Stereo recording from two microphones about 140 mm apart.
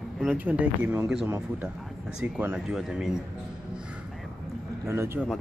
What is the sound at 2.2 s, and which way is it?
Speech, 10° right (ahead or behind).